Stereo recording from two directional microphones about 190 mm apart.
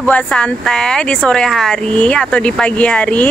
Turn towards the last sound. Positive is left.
turn(degrees=5)  # may be behind; listen again after turning